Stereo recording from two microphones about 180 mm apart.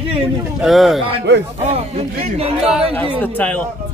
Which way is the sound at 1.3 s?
70° right (ahead or behind).